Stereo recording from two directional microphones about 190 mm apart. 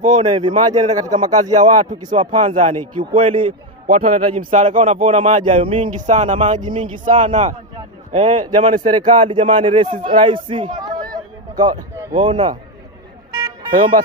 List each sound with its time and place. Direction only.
0.0 s speech: 35° right (ahead or behind)
2.4 s speech: 30° right (ahead or behind)
3.8 s a man's voice: 40° right (ahead or behind); by 12.5 s 25° right (ahead or behind)